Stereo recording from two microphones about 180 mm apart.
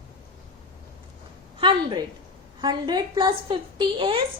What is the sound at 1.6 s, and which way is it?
A woman's voice, 25° right (ahead or behind).